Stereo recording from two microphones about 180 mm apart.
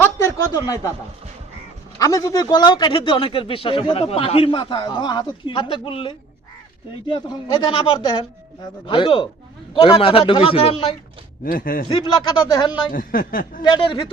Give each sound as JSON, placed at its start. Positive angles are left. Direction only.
{"t": 0.0, "sound": "a sound", "side_deg": 15}
{"t": 2.0, "sound": "a man's voice", "side_deg": 20}
{"t": 11.4, "sound": "a woman's voice", "side_deg": 50}
{"t": 11.9, "sound": "a man's voice", "side_deg": 30}
{"t": 12.9, "sound": "a woman's voice", "side_deg": 50}
{"t": 13.6, "sound": "a man's voice", "side_deg": 25}